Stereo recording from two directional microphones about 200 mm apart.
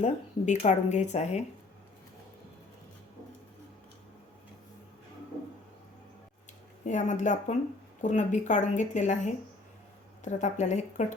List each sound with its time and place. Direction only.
0.0 s speech: 35° left (ahead or behind)
6.8 s speech: 35° left (ahead or behind)